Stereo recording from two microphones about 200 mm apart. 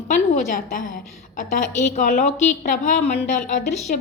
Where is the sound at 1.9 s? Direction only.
40° left (ahead or behind).